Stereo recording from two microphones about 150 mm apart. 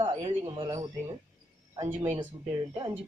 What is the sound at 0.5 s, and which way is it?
Speech, 30° right (ahead or behind).